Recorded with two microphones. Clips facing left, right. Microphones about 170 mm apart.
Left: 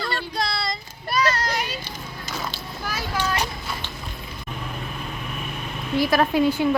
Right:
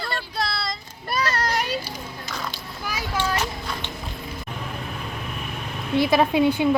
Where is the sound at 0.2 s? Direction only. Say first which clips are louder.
Left 1 dB; 5° right (ahead or behind).